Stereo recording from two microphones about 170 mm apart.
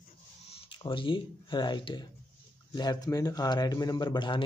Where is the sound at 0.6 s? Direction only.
30° left (ahead or behind).